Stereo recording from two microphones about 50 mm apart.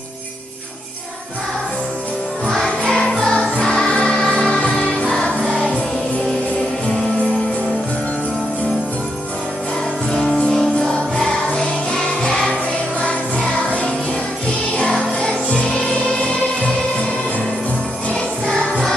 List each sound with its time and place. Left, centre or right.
2.4 s music: centre
10.1 s music: centre
15.0 s music: centre
18.5 s music: centre